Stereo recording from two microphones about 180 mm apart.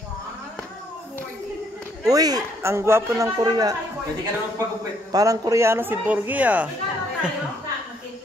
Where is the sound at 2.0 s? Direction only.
20° right (ahead or behind).